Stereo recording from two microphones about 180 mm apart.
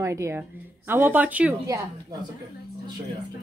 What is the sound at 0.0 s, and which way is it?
Speech, 15° right (ahead or behind).